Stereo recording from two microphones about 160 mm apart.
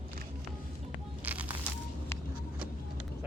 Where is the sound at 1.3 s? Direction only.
10° right (ahead or behind).